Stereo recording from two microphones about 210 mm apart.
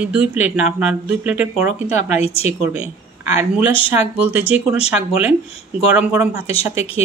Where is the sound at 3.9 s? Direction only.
10° right (ahead or behind).